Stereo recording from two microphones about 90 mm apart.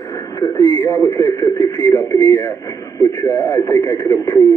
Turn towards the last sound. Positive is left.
turn(degrees=35)  # may be behind; listen again after turning